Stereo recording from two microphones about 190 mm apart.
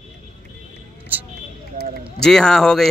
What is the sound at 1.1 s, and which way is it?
Speech, 10° right (ahead or behind).